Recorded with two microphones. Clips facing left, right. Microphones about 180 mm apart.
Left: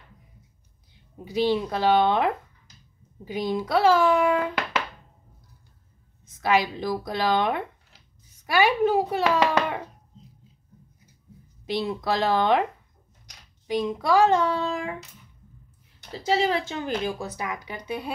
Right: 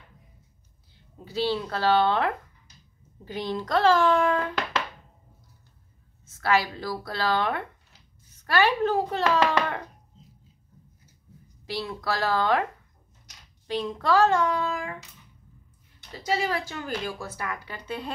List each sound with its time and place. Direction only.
1.1 s a child's voice: 15° left (ahead or behind)
6.2 s a child's voice: 15° left (ahead or behind)
11.6 s speech: 20° left (ahead or behind)
13.7 s a child's voice: 10° left (ahead or behind)
14.4 s speech: 25° left (ahead or behind)
16.1 s speech: 30° left (ahead or behind); by 18.1 s 10° left (ahead or behind)